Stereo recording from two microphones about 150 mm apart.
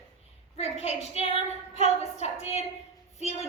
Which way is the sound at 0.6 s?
45° left (ahead or behind).